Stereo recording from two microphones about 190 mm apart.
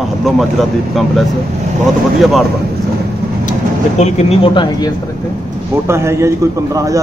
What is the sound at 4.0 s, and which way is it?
Speech, 35° left (ahead or behind).